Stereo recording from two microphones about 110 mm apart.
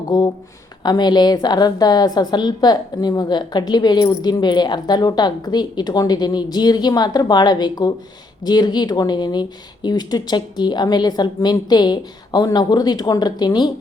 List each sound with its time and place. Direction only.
0.1 s speech: 35° left (ahead or behind)